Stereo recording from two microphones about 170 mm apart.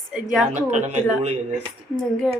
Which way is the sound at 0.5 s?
45° right (ahead or behind).